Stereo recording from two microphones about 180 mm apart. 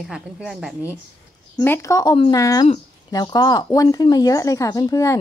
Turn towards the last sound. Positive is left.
turn(degrees=20)  # may be behind; listen again after turning